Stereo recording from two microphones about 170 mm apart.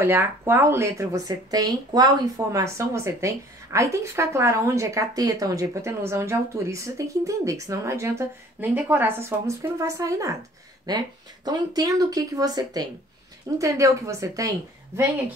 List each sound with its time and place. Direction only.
0.0 s speech: 15° right (ahead or behind)